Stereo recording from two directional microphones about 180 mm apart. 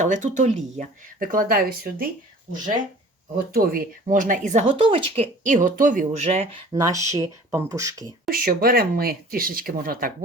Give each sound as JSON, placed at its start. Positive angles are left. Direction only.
{"t": 0.0, "sound": "speech", "side_deg": -45}
{"t": 3.3, "sound": "speech", "side_deg": -55}
{"t": 4.7, "sound": "speech", "side_deg": -30}
{"t": 6.1, "sound": "speech", "side_deg": -35}
{"t": 6.7, "sound": "speech", "side_deg": -20}
{"t": 8.3, "sound": "speech", "side_deg": -55}